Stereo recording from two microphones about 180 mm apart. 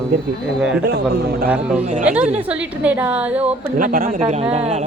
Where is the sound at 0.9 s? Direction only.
65° right (ahead or behind).